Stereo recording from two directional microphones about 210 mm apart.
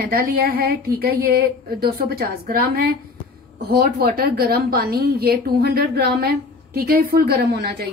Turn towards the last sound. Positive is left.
turn(degrees=-45)  # may be behind; listen again after turning